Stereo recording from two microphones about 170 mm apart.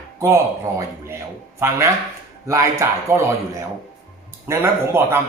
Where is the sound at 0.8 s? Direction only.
15° right (ahead or behind).